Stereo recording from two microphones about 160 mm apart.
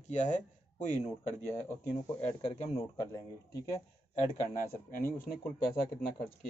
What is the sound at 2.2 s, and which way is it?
Speech, 40° left (ahead or behind).